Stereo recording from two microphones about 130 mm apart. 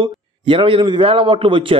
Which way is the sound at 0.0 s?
40° right (ahead or behind).